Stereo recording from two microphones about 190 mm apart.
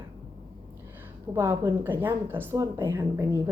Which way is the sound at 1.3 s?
15° right (ahead or behind).